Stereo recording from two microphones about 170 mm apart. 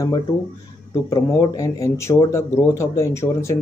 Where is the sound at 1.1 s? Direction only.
20° left (ahead or behind).